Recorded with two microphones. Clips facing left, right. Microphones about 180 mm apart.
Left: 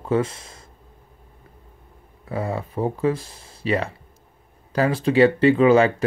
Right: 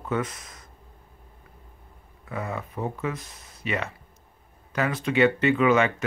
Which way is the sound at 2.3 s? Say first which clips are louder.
Left 6 dB; 30° left (ahead or behind).